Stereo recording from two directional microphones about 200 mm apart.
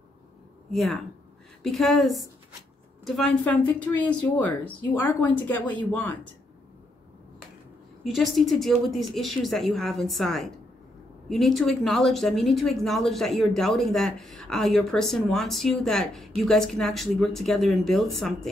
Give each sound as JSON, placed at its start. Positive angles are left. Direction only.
{"t": 0.7, "sound": "speech", "side_deg": 0}
{"t": 8.0, "sound": "speech", "side_deg": 0}